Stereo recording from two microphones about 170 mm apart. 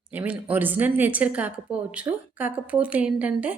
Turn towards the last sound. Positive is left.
turn(degrees=-10)  # may be behind; listen again after turning